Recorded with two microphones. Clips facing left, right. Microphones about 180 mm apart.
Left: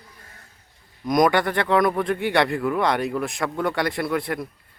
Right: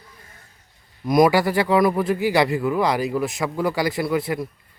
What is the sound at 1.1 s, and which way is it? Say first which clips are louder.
Speech: right 3 dB; 5° right (ahead or behind).